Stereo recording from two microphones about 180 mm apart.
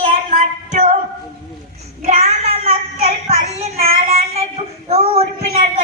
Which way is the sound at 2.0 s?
35° right (ahead or behind).